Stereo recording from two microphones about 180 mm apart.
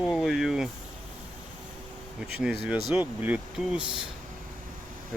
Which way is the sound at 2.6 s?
5° right (ahead or behind).